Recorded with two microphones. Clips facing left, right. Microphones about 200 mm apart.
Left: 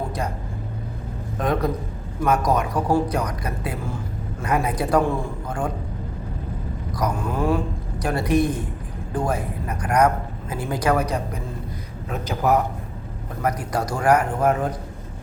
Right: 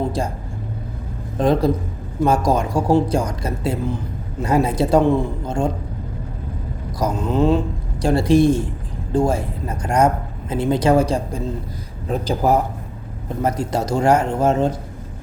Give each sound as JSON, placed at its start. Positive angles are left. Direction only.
{"t": 1.4, "sound": "speech", "side_deg": -30}
{"t": 7.0, "sound": "speech", "side_deg": -25}